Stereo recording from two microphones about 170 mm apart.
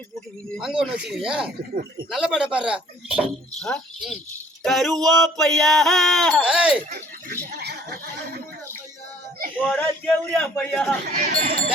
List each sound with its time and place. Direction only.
0.5 s music: 5° right (ahead or behind)
6.9 s speech: 65° right (ahead or behind)
9.6 s a man's voice: 10° left (ahead or behind)
11.3 s speech: 60° right (ahead or behind)